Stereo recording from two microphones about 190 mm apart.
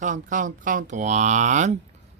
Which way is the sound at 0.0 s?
45° right (ahead or behind).